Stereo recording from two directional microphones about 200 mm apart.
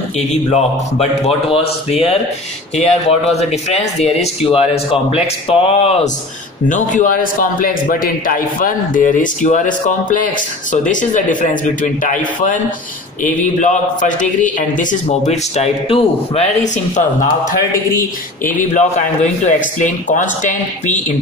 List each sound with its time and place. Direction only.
0.2 s a man's voice: 35° left (ahead or behind)